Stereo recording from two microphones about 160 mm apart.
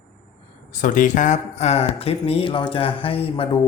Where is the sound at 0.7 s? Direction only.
50° left (ahead or behind).